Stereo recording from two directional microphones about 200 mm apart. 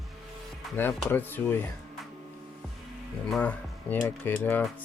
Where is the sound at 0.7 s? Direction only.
10° left (ahead or behind).